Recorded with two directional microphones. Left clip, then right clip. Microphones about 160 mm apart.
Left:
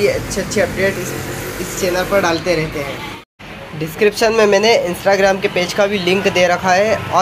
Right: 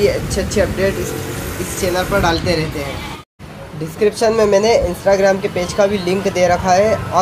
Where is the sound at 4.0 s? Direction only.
5° right (ahead or behind).